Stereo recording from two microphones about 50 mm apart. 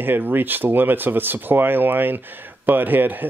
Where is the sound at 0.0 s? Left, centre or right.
Right.